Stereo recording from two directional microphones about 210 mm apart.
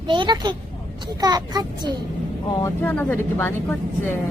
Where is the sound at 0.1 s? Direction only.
20° right (ahead or behind).